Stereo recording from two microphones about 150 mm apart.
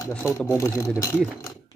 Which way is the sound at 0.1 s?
15° left (ahead or behind).